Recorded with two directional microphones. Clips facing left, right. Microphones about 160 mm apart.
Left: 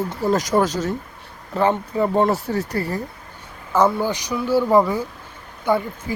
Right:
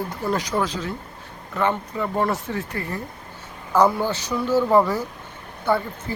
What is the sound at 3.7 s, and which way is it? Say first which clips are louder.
Speech: even; 5° left (ahead or behind).